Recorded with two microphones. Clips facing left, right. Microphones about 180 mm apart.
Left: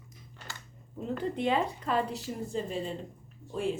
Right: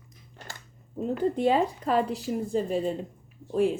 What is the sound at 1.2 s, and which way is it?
Speech, 40° right (ahead or behind).